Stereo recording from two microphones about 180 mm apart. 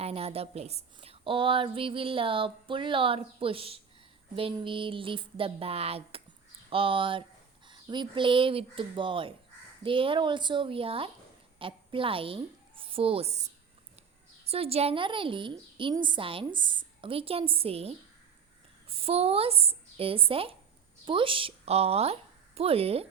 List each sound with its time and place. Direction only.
0.0 s a woman's voice: 35° right (ahead or behind)
14.4 s a woman's voice: 35° right (ahead or behind)